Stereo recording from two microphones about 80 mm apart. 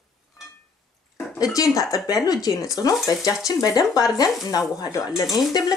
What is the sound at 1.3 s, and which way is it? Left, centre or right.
Speech, left.